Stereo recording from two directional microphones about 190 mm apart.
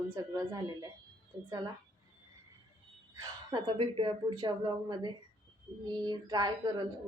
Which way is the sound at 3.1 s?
20° right (ahead or behind).